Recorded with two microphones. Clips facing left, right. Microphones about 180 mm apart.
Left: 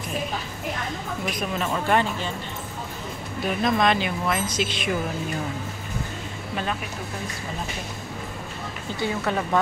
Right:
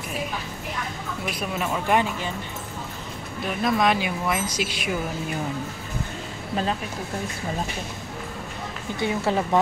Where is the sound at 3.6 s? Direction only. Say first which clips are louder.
Even; 10° right (ahead or behind).